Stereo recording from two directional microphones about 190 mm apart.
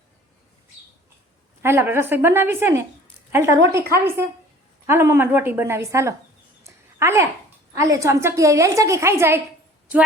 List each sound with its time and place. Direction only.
1.6 s a woman's voice: 10° right (ahead or behind)
6.7 s a sound: 15° right (ahead or behind)
7.8 s a woman's voice: 15° right (ahead or behind)